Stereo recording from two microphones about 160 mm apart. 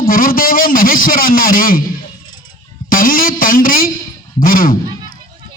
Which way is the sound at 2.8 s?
60° left (ahead or behind).